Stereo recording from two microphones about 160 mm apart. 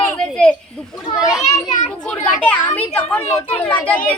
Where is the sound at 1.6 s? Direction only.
50° left (ahead or behind).